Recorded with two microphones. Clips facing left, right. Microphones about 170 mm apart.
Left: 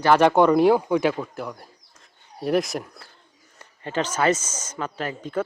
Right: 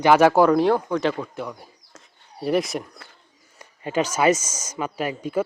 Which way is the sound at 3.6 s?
10° right (ahead or behind).